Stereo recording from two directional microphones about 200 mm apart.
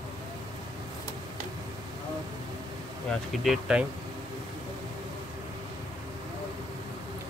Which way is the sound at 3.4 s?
Centre (ahead or behind).